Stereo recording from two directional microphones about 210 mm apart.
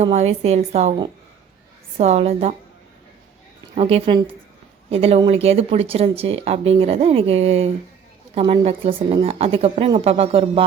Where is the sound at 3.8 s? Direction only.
25° right (ahead or behind).